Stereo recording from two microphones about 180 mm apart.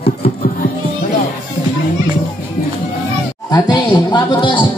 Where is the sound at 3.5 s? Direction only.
20° left (ahead or behind).